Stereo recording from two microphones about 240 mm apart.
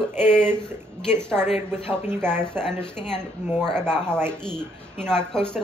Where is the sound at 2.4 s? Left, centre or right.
Centre.